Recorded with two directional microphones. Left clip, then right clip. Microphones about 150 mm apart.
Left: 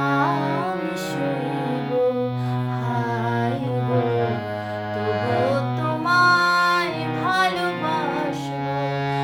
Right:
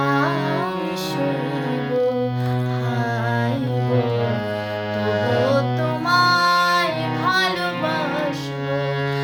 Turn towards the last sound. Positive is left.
turn(degrees=15)  # may be behind; listen again after turning